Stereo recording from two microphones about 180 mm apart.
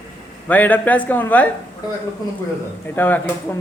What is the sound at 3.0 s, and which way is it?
Speech, 10° left (ahead or behind).